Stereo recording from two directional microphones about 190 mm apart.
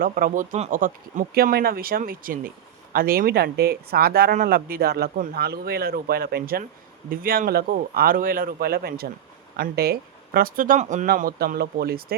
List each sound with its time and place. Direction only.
0.0 s speech: 45° right (ahead or behind)